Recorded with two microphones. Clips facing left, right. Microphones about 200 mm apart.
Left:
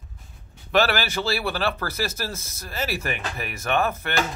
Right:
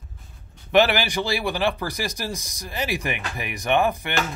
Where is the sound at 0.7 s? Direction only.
15° right (ahead or behind).